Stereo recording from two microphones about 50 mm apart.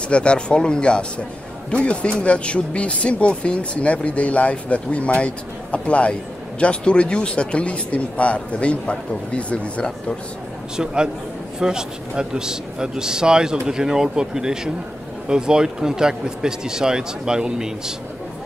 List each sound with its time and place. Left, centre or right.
0.1 s speech: left
11.6 s a man's voice: centre